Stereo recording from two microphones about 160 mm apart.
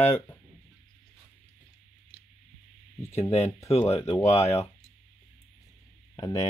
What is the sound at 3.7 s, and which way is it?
Speech, 40° left (ahead or behind).